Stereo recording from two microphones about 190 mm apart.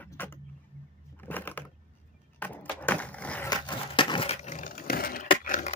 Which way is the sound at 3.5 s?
25° left (ahead or behind).